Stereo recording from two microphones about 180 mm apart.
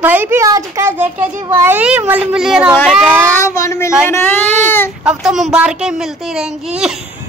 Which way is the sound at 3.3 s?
15° left (ahead or behind).